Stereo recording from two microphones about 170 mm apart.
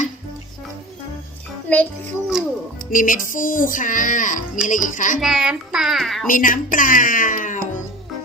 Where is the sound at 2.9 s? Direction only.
55° left (ahead or behind).